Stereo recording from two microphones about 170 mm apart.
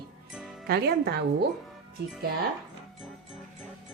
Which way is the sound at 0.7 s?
75° right (ahead or behind).